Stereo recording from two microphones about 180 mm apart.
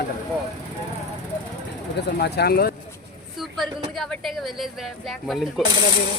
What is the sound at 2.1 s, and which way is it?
Speech, 65° left (ahead or behind).